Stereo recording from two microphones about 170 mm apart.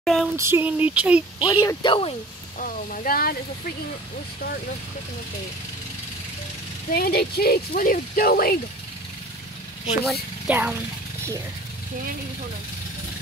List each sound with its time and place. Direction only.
0.0 s a sound: centre (ahead or behind)
0.4 s speech: 15° right (ahead or behind)
1.5 s speech: 20° left (ahead or behind)
2.6 s speech: 55° left (ahead or behind)
6.9 s speech: 65° left (ahead or behind)
10.0 s speech: 5° right (ahead or behind)